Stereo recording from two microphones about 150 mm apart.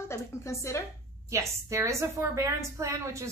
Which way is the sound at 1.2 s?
20° right (ahead or behind).